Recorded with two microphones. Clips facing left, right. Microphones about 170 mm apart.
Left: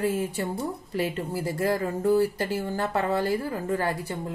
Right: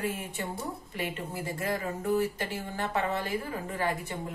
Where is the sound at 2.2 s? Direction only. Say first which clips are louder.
Left 6 dB; 40° left (ahead or behind).